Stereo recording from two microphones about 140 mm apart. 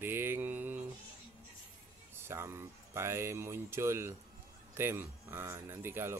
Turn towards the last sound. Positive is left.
turn(degrees=-15)  # may be behind; listen again after turning